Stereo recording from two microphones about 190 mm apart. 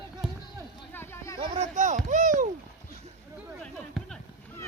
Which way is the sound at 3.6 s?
5° left (ahead or behind).